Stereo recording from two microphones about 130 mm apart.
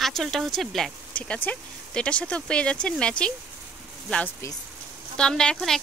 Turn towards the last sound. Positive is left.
turn(degrees=5)  # may be behind; listen again after turning